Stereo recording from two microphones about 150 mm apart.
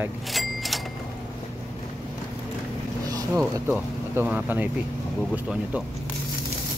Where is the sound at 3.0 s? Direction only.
25° right (ahead or behind).